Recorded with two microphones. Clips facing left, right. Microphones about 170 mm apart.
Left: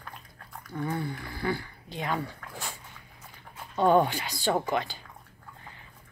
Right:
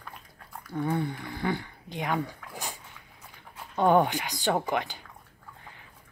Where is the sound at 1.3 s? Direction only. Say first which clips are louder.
Right 1 dB; 20° right (ahead or behind).